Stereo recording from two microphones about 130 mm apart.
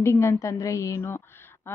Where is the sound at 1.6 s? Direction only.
20° left (ahead or behind).